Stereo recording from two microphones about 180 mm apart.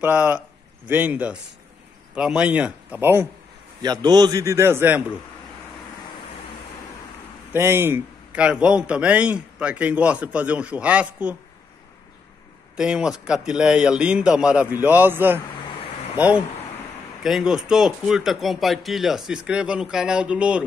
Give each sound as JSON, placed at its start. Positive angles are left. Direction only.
{"t": 0.0, "sound": "a man's voice", "side_deg": -10}
{"t": 3.8, "sound": "a man's voice", "side_deg": -25}
{"t": 7.5, "sound": "a man's voice", "side_deg": -15}
{"t": 12.7, "sound": "a man's voice", "side_deg": -5}